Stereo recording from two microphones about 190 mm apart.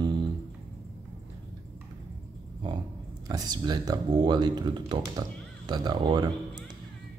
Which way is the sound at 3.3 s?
20° right (ahead or behind).